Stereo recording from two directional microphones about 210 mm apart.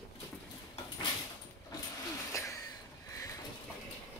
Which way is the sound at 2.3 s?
15° left (ahead or behind).